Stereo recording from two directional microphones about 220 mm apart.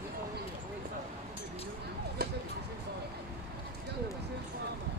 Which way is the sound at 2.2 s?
45° right (ahead or behind).